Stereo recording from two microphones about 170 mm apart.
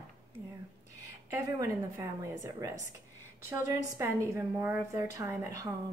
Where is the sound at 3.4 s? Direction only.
15° right (ahead or behind).